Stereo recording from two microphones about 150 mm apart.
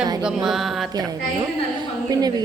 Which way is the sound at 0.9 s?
25° right (ahead or behind).